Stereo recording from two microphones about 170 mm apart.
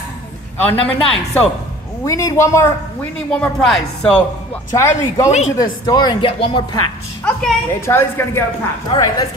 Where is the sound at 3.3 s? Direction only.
5° left (ahead or behind).